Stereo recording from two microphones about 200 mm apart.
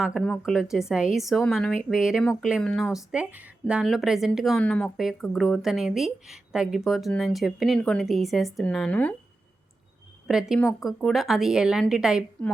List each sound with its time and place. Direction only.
0.3 s speech: centre (ahead or behind)
10.2 s speech: 5° right (ahead or behind)